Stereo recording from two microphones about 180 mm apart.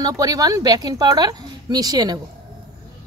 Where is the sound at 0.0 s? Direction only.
20° right (ahead or behind).